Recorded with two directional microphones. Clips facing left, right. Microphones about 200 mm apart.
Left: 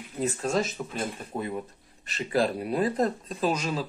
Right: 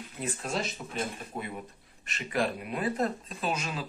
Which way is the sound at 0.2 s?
40° left (ahead or behind).